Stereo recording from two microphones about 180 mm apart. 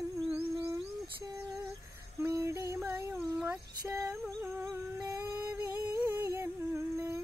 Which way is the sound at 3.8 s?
20° right (ahead or behind).